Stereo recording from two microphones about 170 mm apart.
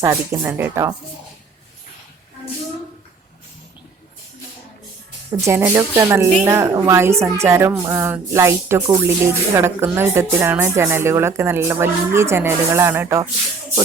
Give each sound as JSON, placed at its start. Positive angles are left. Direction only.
{"t": 0.0, "sound": "speech", "side_deg": -15}
{"t": 5.4, "sound": "speech", "side_deg": -15}